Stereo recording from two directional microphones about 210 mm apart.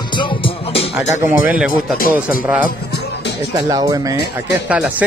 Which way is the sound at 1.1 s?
10° right (ahead or behind).